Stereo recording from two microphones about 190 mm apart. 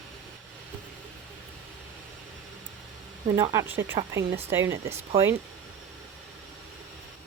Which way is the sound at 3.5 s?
10° right (ahead or behind).